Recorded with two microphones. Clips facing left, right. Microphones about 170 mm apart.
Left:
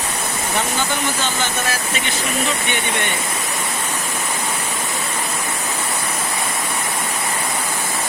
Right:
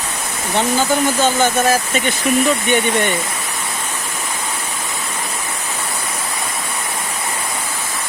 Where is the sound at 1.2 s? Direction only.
45° right (ahead or behind).